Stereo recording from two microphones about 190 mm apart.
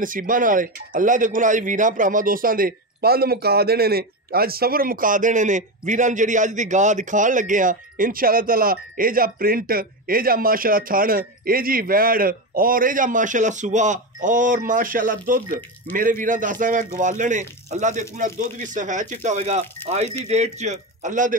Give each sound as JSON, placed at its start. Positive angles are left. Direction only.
{"t": 0.0, "sound": "speech", "side_deg": -45}